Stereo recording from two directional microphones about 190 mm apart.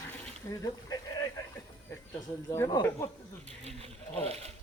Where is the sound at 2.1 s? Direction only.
20° left (ahead or behind).